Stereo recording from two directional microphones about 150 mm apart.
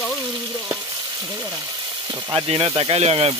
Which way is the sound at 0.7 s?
20° right (ahead or behind).